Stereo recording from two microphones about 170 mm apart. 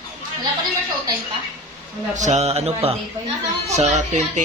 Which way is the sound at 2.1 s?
45° right (ahead or behind).